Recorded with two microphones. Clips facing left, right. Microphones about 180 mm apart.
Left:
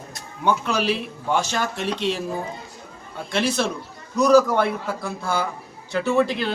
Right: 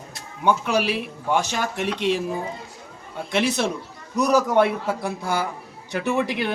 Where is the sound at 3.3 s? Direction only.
20° right (ahead or behind).